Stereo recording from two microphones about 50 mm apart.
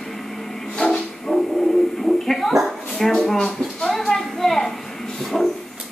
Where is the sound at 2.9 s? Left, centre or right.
Centre.